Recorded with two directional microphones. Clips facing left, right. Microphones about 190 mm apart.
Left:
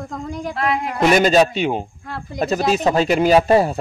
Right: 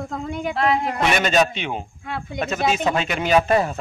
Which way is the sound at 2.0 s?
Centre (ahead or behind).